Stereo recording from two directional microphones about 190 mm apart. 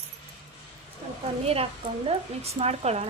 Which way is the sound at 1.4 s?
30° right (ahead or behind).